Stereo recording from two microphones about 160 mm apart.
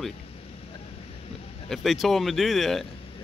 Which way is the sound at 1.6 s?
Centre (ahead or behind).